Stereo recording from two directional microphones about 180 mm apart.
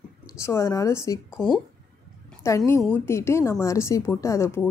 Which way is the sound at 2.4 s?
15° left (ahead or behind).